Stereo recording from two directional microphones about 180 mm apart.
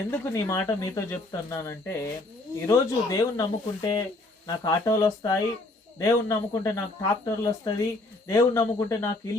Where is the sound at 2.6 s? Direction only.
15° left (ahead or behind).